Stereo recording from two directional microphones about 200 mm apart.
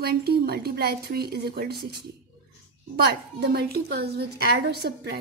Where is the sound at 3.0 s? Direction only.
55° right (ahead or behind).